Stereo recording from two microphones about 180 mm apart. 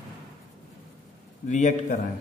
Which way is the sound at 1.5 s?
45° left (ahead or behind).